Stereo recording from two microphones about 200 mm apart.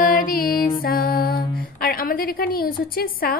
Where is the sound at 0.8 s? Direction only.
50° left (ahead or behind).